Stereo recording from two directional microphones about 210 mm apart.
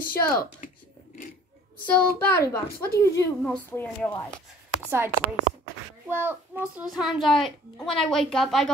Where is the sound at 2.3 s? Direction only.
15° left (ahead or behind).